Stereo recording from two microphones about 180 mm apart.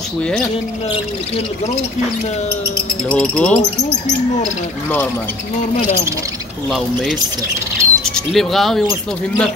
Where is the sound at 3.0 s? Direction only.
5° left (ahead or behind).